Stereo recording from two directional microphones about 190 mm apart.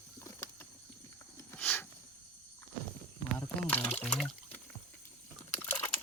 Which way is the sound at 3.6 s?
10° left (ahead or behind).